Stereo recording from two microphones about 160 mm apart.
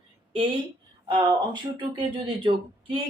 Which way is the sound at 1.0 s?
30° right (ahead or behind).